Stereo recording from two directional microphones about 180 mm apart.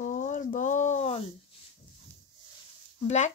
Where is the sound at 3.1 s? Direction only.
40° left (ahead or behind).